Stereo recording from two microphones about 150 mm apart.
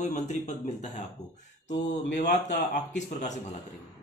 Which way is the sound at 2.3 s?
55° left (ahead or behind).